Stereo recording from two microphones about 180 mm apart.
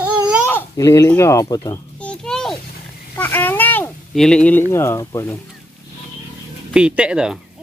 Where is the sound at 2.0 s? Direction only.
5° left (ahead or behind).